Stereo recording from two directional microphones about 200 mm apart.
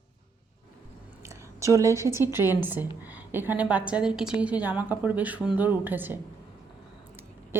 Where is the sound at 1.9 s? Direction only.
15° right (ahead or behind).